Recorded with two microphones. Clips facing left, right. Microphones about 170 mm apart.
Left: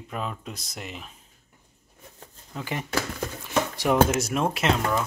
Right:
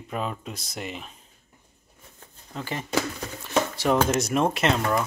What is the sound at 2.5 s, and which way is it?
Speech, 15° left (ahead or behind).